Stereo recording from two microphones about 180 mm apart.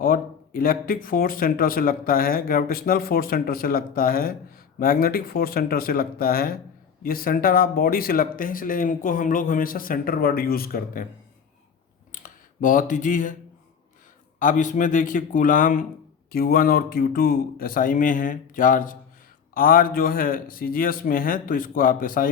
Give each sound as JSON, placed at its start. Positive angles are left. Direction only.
{"t": 0.0, "sound": "speech", "side_deg": 55}
{"t": 12.1, "sound": "a sound", "side_deg": 45}
{"t": 14.3, "sound": "speech", "side_deg": 45}